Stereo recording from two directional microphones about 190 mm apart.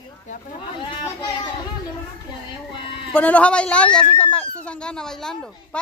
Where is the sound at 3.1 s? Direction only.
5° left (ahead or behind).